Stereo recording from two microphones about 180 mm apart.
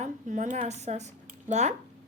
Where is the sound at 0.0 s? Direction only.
45° right (ahead or behind).